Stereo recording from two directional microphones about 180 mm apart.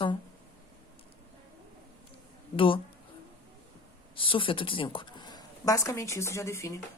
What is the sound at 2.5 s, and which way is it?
Speech, 30° left (ahead or behind).